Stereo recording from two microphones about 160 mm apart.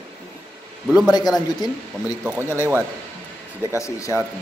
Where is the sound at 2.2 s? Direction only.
10° right (ahead or behind).